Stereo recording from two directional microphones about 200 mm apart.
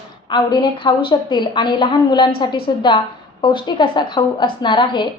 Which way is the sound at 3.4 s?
25° left (ahead or behind).